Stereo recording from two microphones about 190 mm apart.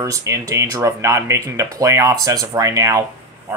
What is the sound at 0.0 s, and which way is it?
Speech, 15° right (ahead or behind).